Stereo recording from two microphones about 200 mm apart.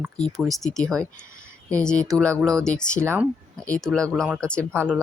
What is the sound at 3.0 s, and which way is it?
Speech, 15° right (ahead or behind).